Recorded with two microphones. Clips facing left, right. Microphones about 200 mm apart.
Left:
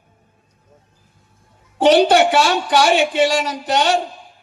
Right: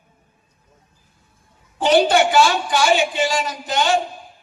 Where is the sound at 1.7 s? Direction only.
75° left (ahead or behind).